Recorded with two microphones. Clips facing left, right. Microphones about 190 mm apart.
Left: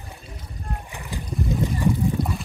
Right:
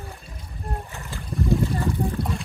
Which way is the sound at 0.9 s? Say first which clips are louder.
Left 1 dB; 15° left (ahead or behind).